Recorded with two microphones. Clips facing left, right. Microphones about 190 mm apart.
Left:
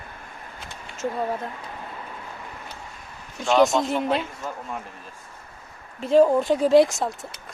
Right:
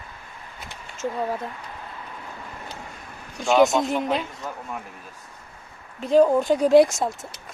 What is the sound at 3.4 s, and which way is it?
Speech, centre (ahead or behind).